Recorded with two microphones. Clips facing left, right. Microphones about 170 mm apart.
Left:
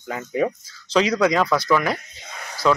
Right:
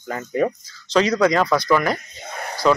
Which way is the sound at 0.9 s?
5° left (ahead or behind).